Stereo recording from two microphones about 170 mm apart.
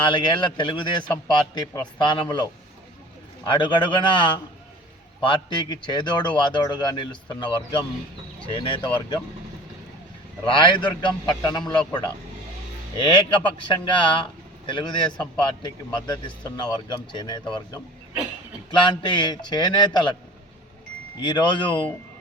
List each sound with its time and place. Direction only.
0.0 s a man's voice: 25° left (ahead or behind)
10.4 s a man's voice: 30° left (ahead or behind)
13.7 s a man's voice: 30° left (ahead or behind)
21.2 s a man's voice: 25° left (ahead or behind)